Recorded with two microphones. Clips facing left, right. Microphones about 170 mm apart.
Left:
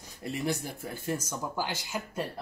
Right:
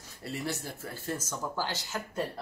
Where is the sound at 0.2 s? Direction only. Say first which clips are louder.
Left 4 dB; 15° left (ahead or behind).